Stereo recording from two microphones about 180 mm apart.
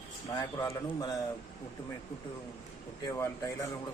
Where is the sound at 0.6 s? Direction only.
25° left (ahead or behind).